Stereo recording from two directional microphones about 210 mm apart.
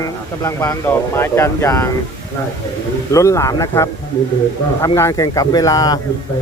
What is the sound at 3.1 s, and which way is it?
Speech, 15° left (ahead or behind).